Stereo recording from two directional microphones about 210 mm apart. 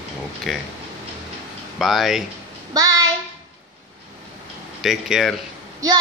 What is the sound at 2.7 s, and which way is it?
Child singing, 15° right (ahead or behind).